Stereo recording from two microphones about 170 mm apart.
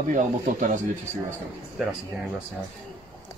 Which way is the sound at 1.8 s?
Centre (ahead or behind).